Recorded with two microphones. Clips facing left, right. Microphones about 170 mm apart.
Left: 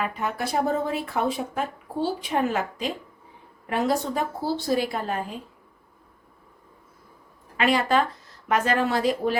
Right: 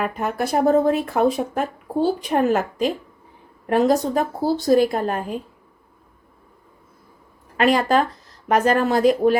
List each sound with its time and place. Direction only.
0.0 s speech: 50° right (ahead or behind)
7.5 s speech: 45° right (ahead or behind)